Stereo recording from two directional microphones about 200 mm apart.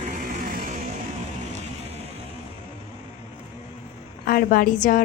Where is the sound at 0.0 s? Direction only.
45° right (ahead or behind).